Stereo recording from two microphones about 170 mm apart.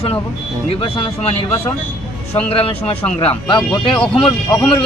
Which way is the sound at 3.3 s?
5° left (ahead or behind).